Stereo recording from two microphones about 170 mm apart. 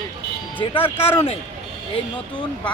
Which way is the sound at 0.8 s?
15° left (ahead or behind).